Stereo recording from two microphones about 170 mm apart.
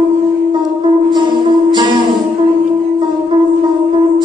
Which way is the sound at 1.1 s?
25° right (ahead or behind).